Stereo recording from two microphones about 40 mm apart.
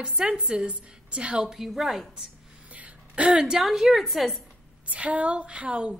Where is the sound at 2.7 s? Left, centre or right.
Right.